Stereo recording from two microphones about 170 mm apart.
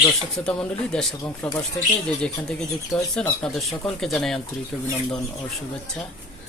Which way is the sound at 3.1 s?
5° left (ahead or behind).